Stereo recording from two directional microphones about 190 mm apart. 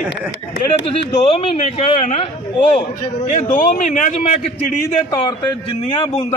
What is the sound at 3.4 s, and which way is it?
Speech, 45° left (ahead or behind).